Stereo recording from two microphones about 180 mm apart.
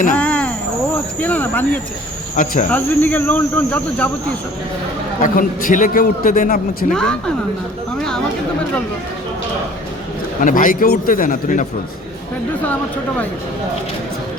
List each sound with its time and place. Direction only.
0.2 s cricket: 5° left (ahead or behind)
1.2 s speech: 10° left (ahead or behind)
2.3 s a man's voice: 45° left (ahead or behind)
2.6 s speech: 10° left (ahead or behind)
5.2 s a man's voice: 45° left (ahead or behind)
6.9 s a woman's voice: 5° left (ahead or behind)
10.4 s a man's voice: 50° left (ahead or behind)